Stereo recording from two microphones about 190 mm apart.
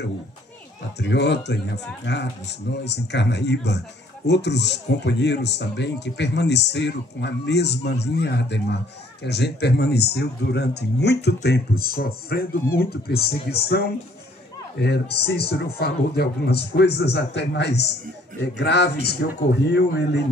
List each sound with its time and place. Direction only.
0.9 s speech: 65° left (ahead or behind)